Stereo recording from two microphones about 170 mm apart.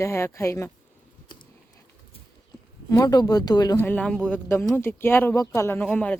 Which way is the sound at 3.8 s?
10° left (ahead or behind).